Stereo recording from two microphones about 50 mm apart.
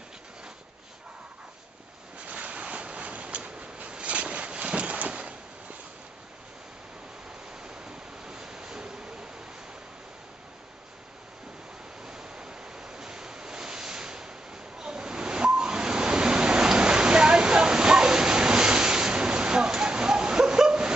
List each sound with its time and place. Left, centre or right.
2.2 s a sound: right
7.6 s waves: centre
12.1 s waves: centre